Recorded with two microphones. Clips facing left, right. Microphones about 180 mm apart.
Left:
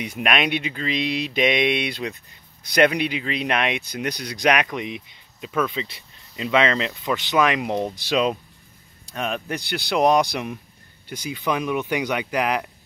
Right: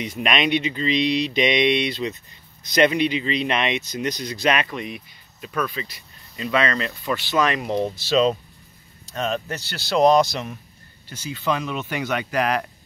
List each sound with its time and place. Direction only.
0.0 s speech: 10° left (ahead or behind)